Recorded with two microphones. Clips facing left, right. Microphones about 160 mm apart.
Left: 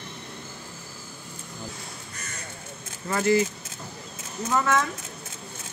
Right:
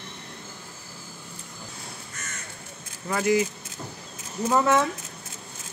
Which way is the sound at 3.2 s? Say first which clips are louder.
Left 1 dB; 15° right (ahead or behind).